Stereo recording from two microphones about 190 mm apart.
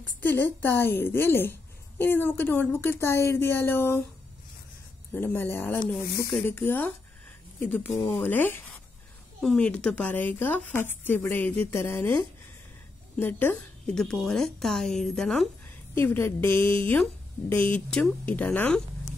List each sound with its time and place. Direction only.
0.2 s a woman's voice: 10° left (ahead or behind)
5.1 s a woman's voice: 10° left (ahead or behind)
15.9 s a woman's voice: 10° left (ahead or behind)